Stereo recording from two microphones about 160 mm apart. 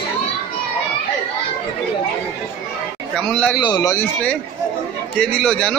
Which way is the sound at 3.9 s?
10° left (ahead or behind).